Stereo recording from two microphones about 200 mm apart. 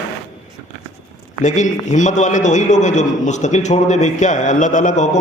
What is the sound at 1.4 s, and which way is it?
A man's voice, 40° left (ahead or behind).